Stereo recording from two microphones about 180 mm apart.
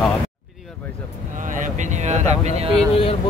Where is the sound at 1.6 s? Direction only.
40° right (ahead or behind).